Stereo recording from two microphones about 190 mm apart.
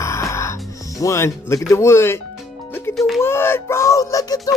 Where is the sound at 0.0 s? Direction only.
15° left (ahead or behind).